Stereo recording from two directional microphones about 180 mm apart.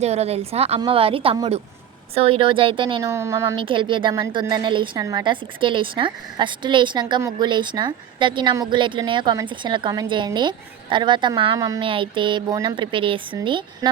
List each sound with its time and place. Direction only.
0.0 s a woman's voice: 35° right (ahead or behind)
3.0 s a woman's voice: 15° right (ahead or behind)
3.6 s a woman's voice: 25° right (ahead or behind)